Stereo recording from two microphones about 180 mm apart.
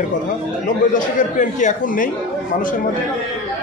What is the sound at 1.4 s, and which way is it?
Speech, 45° left (ahead or behind).